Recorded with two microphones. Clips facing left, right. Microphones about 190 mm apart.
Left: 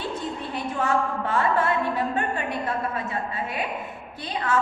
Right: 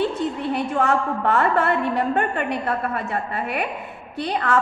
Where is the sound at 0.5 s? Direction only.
65° right (ahead or behind).